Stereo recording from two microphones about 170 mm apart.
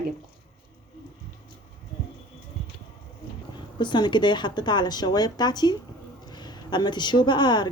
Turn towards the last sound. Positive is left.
turn(degrees=25)  # may be behind; listen again after turning